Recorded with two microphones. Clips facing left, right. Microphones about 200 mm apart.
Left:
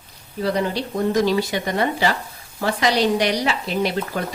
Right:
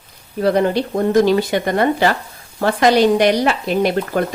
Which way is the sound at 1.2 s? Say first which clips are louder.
Right 7 dB; 55° right (ahead or behind).